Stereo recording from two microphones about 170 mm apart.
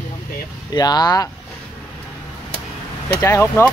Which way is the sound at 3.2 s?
20° left (ahead or behind).